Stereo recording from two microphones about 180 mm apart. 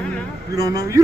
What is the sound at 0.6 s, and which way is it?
Speech, 20° right (ahead or behind).